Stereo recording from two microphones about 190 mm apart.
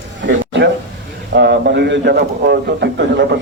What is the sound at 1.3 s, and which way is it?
A man's voice, 60° right (ahead or behind).